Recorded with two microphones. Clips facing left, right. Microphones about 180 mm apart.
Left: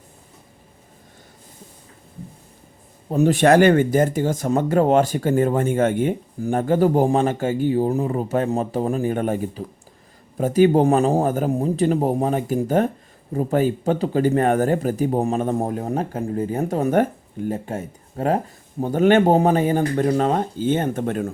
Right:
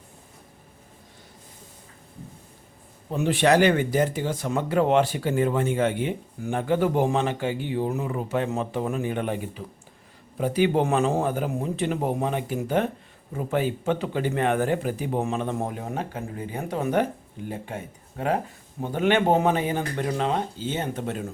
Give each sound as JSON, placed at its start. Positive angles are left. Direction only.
{"t": 3.1, "sound": "speech", "side_deg": 45}